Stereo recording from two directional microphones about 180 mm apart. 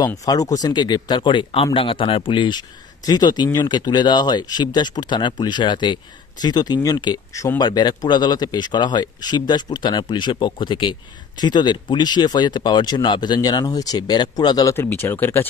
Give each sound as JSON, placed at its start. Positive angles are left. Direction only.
{"t": 0.0, "sound": "speech", "side_deg": 20}